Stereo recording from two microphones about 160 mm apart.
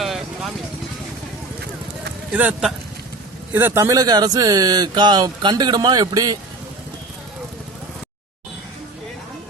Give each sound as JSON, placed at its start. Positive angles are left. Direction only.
{"t": 0.0, "sound": "vehicle", "side_deg": 0}
{"t": 2.3, "sound": "speech", "side_deg": -5}